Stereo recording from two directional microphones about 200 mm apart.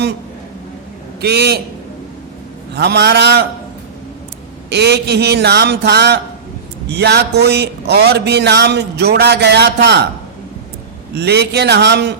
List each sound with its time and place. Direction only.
1.2 s a man's voice: 55° right (ahead or behind)
2.7 s speech: 55° right (ahead or behind)
4.7 s speech: 55° right (ahead or behind)
11.1 s speech: 55° right (ahead or behind)